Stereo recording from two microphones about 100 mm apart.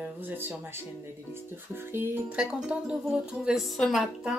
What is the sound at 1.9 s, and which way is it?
Music, 25° right (ahead or behind).